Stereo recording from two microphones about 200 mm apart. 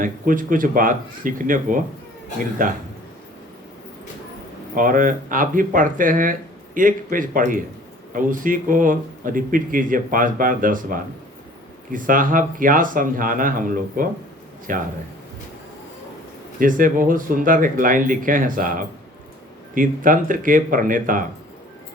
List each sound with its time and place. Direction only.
0.0 s speech: 45° right (ahead or behind)
4.7 s speech: 40° right (ahead or behind)
16.6 s speech: 45° right (ahead or behind)